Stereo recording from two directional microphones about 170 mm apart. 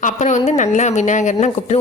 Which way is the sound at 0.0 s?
45° left (ahead or behind).